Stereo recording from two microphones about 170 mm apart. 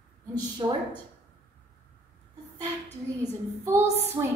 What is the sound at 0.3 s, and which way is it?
Speech, 25° right (ahead or behind).